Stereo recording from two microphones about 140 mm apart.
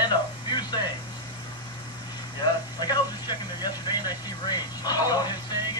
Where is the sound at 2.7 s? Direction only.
30° left (ahead or behind).